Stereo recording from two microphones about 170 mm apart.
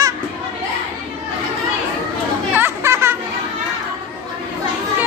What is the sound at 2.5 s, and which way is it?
Chatter, 15° right (ahead or behind).